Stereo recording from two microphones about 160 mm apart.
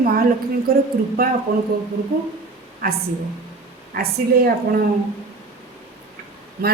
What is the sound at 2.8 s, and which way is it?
A man's voice, 65° right (ahead or behind).